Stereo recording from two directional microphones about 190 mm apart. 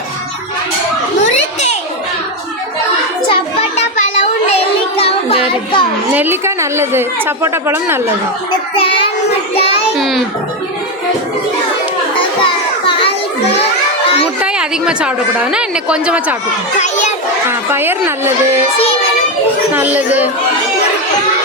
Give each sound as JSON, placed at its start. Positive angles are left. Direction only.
{"t": 3.2, "sound": "children playing", "side_deg": 30}
{"t": 4.9, "sound": "music", "side_deg": 30}
{"t": 6.1, "sound": "a woman's voice", "side_deg": -10}
{"t": 8.7, "sound": "child singing", "side_deg": 30}
{"t": 10.0, "sound": "a woman's voice", "side_deg": 0}
{"t": 12.4, "sound": "children playing", "side_deg": 25}
{"t": 14.4, "sound": "a woman's voice", "side_deg": -5}
{"t": 16.8, "sound": "a child's voice", "side_deg": 40}
{"t": 17.5, "sound": "a woman's voice", "side_deg": -10}
{"t": 19.7, "sound": "a woman's voice", "side_deg": -10}